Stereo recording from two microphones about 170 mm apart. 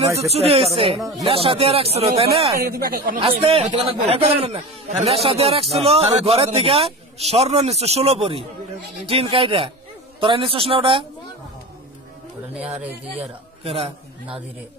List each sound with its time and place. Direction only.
0.2 s speech: 35° right (ahead or behind)
2.6 s speech: 65° right (ahead or behind)
3.2 s speech: 35° right (ahead or behind)
13.7 s speech: 35° right (ahead or behind)